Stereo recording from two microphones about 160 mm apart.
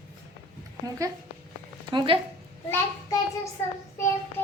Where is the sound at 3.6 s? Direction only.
15° left (ahead or behind).